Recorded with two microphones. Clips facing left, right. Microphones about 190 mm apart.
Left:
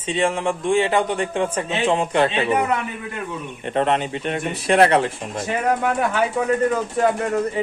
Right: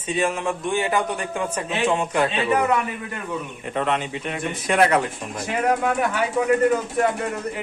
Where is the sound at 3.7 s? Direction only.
35° left (ahead or behind).